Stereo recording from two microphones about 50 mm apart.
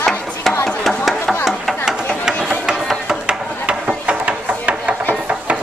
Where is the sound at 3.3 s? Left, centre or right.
Centre.